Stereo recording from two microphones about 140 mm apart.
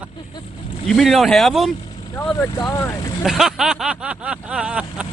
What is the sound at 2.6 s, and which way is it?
Speech, 25° left (ahead or behind).